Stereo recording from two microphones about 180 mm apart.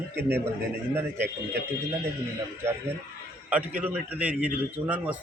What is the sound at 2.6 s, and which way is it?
A man's voice, 15° right (ahead or behind).